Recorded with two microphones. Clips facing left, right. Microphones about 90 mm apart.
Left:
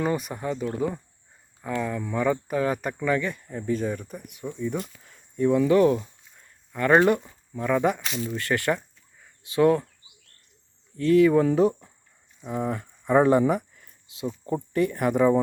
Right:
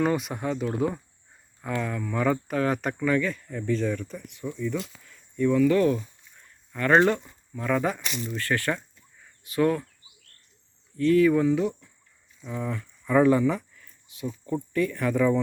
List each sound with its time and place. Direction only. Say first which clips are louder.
0.0 s speech: right 1 dB; centre (ahead or behind)
3.0 s speech: even; 15° left (ahead or behind)
10.9 s speech: left 1 dB; 25° left (ahead or behind)
11.4 s speech: left 3 dB; 40° left (ahead or behind)
12.5 s speech: left 4 dB; 30° left (ahead or behind)
13.5 s a sound: left 3 dB; 20° left (ahead or behind)
14.3 s speech: left 1 dB; 30° left (ahead or behind)